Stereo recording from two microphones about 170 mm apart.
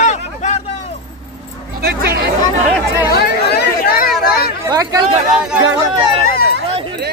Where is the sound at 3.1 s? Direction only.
70° left (ahead or behind).